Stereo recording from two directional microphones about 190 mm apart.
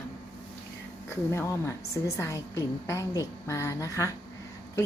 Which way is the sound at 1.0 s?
15° left (ahead or behind).